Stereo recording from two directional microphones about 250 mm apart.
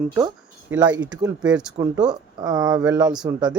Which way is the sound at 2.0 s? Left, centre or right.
Centre.